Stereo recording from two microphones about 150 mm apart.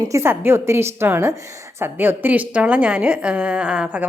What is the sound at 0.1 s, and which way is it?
A woman's voice, 15° right (ahead or behind).